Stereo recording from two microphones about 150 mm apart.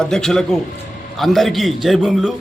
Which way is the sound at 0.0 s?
5° left (ahead or behind).